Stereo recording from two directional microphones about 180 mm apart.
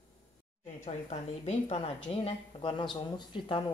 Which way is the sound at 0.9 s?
35° left (ahead or behind).